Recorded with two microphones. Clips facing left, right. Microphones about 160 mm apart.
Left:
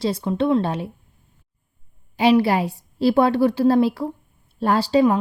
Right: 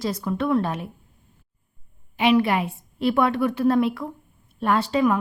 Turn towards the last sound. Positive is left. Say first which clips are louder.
# left 3 dB
turn(degrees=30)  # may be behind; listen again after turning